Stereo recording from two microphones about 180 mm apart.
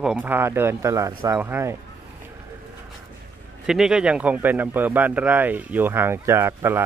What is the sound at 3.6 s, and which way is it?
Speech, 5° right (ahead or behind).